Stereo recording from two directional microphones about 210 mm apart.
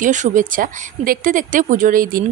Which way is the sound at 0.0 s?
35° right (ahead or behind).